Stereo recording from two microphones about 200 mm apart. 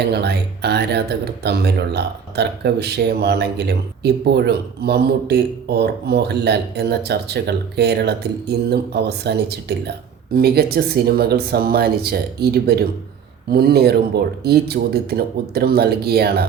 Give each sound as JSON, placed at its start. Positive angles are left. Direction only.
{"t": 0.1, "sound": "speech", "side_deg": -55}